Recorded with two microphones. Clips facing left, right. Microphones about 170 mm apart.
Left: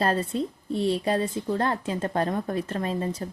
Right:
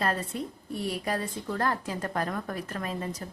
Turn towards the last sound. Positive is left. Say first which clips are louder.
# left 6 dB
turn(degrees=30)  # may be behind; listen again after turning